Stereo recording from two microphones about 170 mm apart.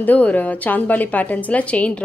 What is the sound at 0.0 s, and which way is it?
A woman's voice, 10° left (ahead or behind).